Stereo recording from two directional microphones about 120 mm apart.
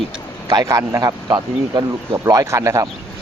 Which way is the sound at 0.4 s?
25° right (ahead or behind).